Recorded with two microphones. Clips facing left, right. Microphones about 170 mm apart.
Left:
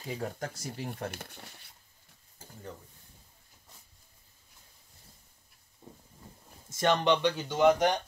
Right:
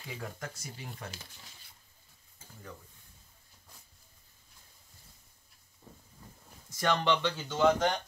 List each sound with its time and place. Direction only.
0.0 s speech: 40° left (ahead or behind)
0.6 s speech: 55° left (ahead or behind)
5.8 s a sound: 20° left (ahead or behind)
6.7 s speech: 25° left (ahead or behind)